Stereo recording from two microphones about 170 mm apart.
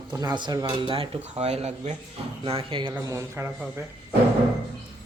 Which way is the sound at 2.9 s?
15° right (ahead or behind).